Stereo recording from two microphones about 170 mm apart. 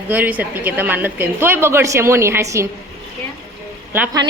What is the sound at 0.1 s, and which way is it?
A woman's voice, 10° right (ahead or behind).